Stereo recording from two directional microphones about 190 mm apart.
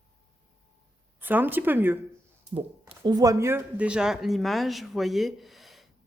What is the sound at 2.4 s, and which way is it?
Speech, 30° right (ahead or behind).